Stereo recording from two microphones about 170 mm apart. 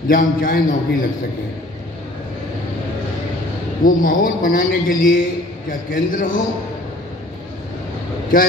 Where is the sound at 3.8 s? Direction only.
55° left (ahead or behind).